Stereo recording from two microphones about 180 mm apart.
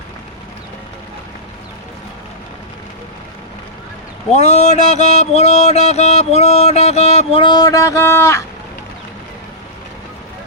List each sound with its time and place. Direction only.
4.3 s mantra: 40° left (ahead or behind); by 8.4 s 15° left (ahead or behind)